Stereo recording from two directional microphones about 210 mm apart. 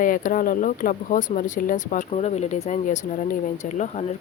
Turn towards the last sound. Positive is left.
turn(degrees=35)  # may be behind; listen again after turning